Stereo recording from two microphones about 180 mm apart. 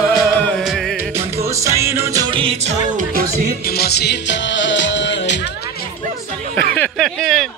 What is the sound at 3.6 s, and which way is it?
Music, 60° left (ahead or behind).